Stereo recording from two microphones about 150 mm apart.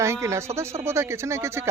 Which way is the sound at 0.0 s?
20° right (ahead or behind).